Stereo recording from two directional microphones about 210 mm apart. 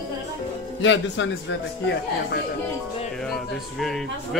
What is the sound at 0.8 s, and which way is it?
Speech, 60° left (ahead or behind).